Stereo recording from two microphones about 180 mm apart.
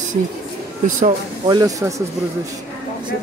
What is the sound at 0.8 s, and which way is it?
Speech, 45° right (ahead or behind).